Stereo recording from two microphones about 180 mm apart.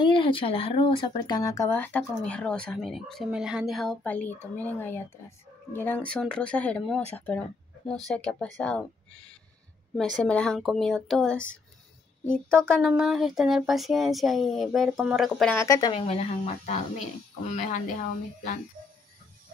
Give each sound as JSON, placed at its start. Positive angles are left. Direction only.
{"t": 0.0, "sound": "speech", "side_deg": 30}
{"t": 15.5, "sound": "speech", "side_deg": 20}